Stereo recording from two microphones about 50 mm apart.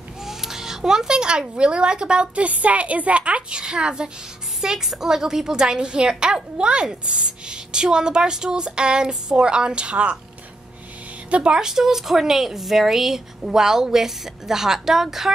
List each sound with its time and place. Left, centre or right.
0.2 s a woman's voice: centre
11.2 s a woman's voice: right
11.6 s a woman's voice: centre